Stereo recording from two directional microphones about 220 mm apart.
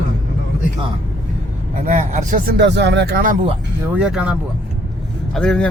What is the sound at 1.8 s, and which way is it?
Speech, 35° right (ahead or behind).